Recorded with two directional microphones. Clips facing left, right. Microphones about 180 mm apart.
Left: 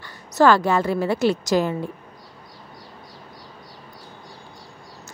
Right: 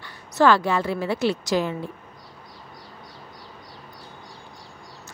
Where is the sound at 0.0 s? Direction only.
45° left (ahead or behind).